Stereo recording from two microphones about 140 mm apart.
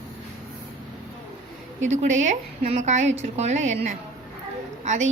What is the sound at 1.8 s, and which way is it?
A woman's voice, 55° right (ahead or behind).